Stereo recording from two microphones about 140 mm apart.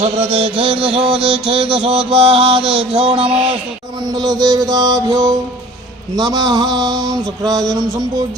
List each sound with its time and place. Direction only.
0.0 s music: 45° right (ahead or behind)
1.5 s mantra: 40° right (ahead or behind)
1.9 s a sound: 5° right (ahead or behind)
2.1 s mantra: 35° right (ahead or behind)
2.6 s a sound: 5° right (ahead or behind)
3.0 s mantra: 40° right (ahead or behind)